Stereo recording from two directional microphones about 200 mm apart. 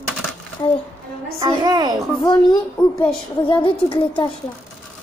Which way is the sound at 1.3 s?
20° right (ahead or behind).